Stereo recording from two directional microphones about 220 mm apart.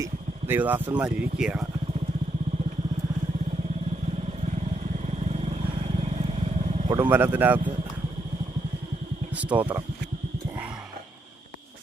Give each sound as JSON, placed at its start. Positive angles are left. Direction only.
{"t": 0.0, "sound": "speech", "side_deg": -10}
{"t": 5.3, "sound": "vehicle", "side_deg": -30}
{"t": 6.8, "sound": "speech", "side_deg": -15}
{"t": 9.3, "sound": "speech", "side_deg": -5}